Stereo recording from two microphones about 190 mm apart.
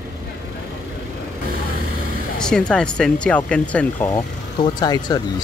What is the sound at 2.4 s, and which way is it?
Speech, 5° left (ahead or behind).